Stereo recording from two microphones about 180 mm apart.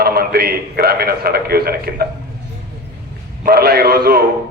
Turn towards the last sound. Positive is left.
turn(degrees=-60)  # may be behind; listen again after turning